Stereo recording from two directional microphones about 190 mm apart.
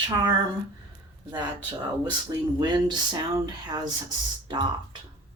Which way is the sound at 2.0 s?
20° right (ahead or behind).